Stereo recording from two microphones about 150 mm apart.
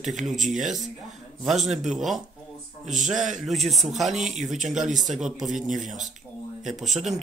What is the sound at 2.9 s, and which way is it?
A man's voice, centre (ahead or behind).